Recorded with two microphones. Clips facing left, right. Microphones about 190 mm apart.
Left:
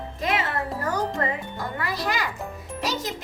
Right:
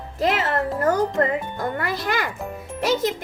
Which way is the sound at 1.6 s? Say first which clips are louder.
Right 4 dB; 55° right (ahead or behind).